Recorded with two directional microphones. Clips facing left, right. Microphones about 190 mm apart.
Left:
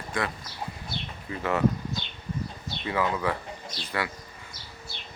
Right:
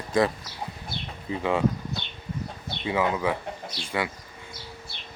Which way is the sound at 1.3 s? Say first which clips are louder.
Right 1 dB; 15° right (ahead or behind).